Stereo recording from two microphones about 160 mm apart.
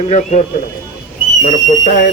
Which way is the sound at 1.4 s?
50° left (ahead or behind).